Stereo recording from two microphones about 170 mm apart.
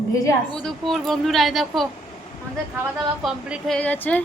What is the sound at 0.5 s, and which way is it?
Speech, centre (ahead or behind).